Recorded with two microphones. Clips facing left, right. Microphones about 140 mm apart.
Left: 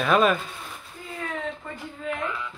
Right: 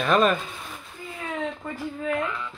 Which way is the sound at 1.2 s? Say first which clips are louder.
Right 2 dB; 10° right (ahead or behind).